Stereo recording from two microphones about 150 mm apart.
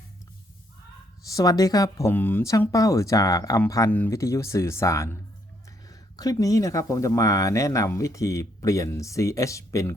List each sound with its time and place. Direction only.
1.3 s speech: 25° left (ahead or behind)